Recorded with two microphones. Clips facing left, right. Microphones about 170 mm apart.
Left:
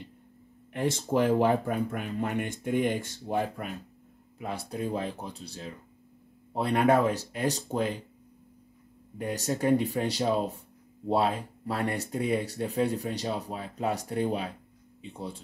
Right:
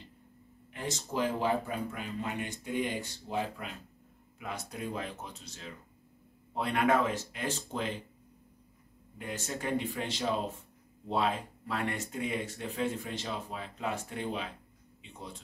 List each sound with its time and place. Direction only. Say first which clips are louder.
0.7 s speech: left 8 dB; 55° left (ahead or behind)
4.4 s speech: left 6 dB; 35° left (ahead or behind)
9.2 s speech: left 8 dB; 40° left (ahead or behind)